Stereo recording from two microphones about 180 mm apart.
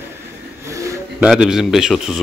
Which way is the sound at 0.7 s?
15° right (ahead or behind).